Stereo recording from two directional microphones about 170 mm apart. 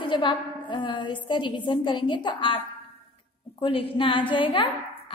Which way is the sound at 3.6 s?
30° left (ahead or behind).